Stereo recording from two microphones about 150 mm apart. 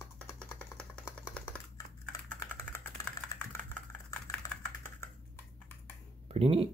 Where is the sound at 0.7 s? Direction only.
5° left (ahead or behind).